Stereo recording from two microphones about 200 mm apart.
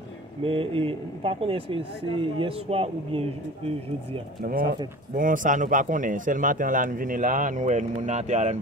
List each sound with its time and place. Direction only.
0.4 s speech: 25° right (ahead or behind)
4.4 s speech: 45° right (ahead or behind)